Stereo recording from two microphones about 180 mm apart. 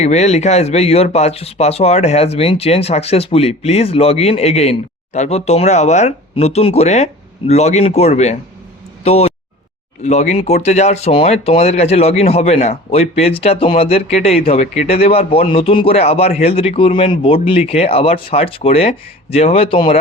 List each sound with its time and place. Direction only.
0.0 s speech: 40° left (ahead or behind)